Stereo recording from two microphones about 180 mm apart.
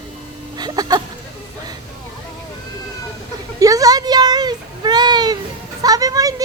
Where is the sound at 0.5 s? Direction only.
20° right (ahead or behind).